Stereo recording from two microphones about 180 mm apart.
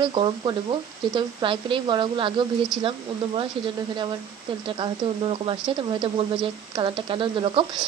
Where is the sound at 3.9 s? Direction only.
25° right (ahead or behind).